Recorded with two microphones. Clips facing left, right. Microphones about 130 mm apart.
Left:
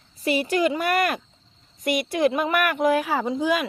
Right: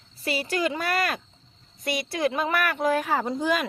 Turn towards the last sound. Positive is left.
turn(degrees=5)  # may be behind; listen again after turning